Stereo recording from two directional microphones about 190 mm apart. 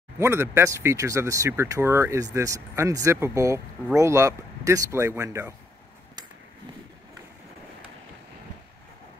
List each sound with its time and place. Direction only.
0.2 s speech: 15° right (ahead or behind)